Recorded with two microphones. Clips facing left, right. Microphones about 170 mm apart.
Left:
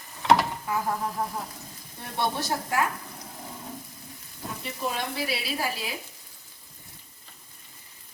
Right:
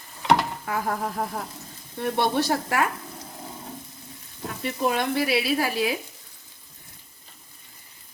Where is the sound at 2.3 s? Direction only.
65° right (ahead or behind).